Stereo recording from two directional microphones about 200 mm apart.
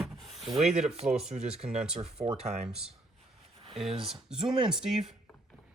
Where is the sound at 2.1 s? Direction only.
30° right (ahead or behind).